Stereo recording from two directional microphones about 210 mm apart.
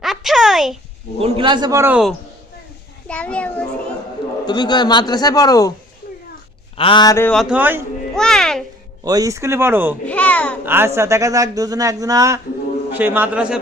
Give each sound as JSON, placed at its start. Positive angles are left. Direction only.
{"t": 0.0, "sound": "a sound", "side_deg": 0}
{"t": 1.2, "sound": "a man's voice", "side_deg": -25}
{"t": 3.1, "sound": "a child's voice", "side_deg": 5}
{"t": 4.4, "sound": "a man's voice", "side_deg": 20}
{"t": 6.7, "sound": "a man's voice", "side_deg": 25}
{"t": 7.3, "sound": "a child's voice", "side_deg": 0}
{"t": 8.1, "sound": "music", "side_deg": 0}
{"t": 9.0, "sound": "a man's voice", "side_deg": -15}
{"t": 10.1, "sound": "speech", "side_deg": 5}
{"t": 10.7, "sound": "a man's voice", "side_deg": -10}